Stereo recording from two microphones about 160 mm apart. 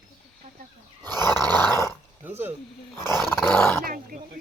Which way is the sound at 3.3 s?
15° left (ahead or behind).